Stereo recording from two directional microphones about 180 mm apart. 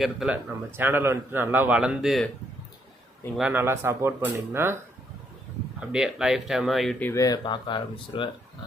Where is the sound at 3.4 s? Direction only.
10° right (ahead or behind); by 8.3 s 25° left (ahead or behind).